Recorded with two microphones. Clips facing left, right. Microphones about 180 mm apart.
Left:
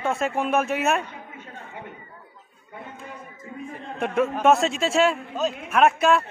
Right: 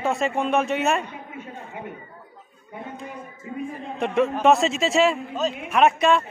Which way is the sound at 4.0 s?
Centre (ahead or behind).